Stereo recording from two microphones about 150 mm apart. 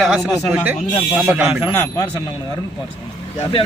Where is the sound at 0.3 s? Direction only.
10° right (ahead or behind).